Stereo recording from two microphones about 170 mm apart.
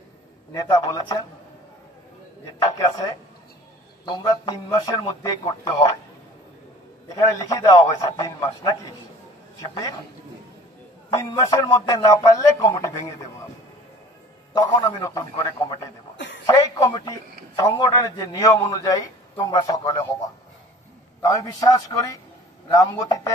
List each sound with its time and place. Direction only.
0.6 s a man's voice: 20° left (ahead or behind)
4.0 s a man's voice: 25° left (ahead or behind)
7.1 s a man's voice: 20° left (ahead or behind)
11.4 s a man's voice: 20° left (ahead or behind)
14.5 s a man's voice: 20° left (ahead or behind)
21.2 s a man's voice: 20° left (ahead or behind)